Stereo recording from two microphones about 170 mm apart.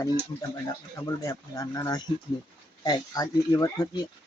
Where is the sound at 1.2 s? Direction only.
20° left (ahead or behind).